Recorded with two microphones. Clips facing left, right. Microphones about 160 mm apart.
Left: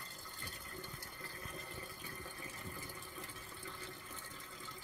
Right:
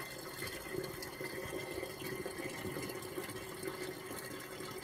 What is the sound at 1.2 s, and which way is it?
Water, 40° right (ahead or behind).